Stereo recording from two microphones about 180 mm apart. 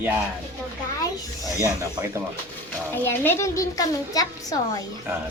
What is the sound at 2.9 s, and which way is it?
A woman's voice, 10° left (ahead or behind).